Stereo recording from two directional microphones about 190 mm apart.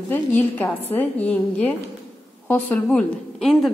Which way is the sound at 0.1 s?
10° left (ahead or behind).